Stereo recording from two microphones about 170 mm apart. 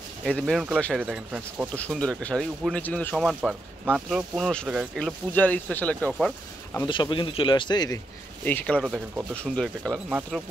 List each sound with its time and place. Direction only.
0.2 s speech: 5° left (ahead or behind)
3.3 s speech: 5° right (ahead or behind)
6.9 s speech: 30° left (ahead or behind)
8.5 s speech: 10° left (ahead or behind)
8.8 s speech: 5° right (ahead or behind)
9.3 s speech: 5° left (ahead or behind)